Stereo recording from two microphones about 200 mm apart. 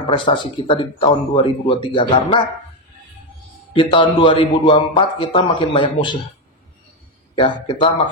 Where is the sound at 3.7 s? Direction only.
25° left (ahead or behind).